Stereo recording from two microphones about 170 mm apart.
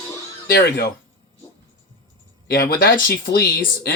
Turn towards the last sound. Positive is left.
turn(degrees=65)  # may be behind; listen again after turning